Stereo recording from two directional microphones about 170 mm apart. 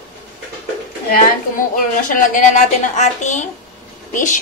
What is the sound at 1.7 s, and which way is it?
A woman's voice, 55° left (ahead or behind).